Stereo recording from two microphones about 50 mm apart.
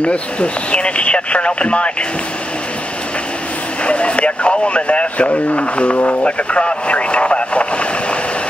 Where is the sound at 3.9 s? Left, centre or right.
Left.